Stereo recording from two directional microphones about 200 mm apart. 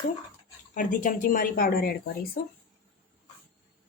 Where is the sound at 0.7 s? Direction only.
40° left (ahead or behind).